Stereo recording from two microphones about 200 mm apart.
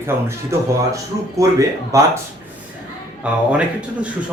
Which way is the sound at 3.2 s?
5° right (ahead or behind).